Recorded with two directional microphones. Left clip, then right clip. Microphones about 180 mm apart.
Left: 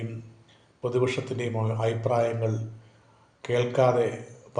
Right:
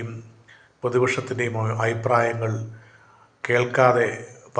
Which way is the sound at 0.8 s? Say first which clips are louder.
Right 5 dB; centre (ahead or behind).